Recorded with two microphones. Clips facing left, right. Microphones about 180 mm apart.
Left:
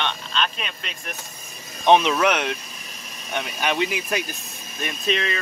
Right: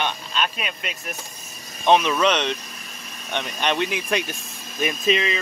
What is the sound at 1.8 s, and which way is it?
Speech, 20° left (ahead or behind).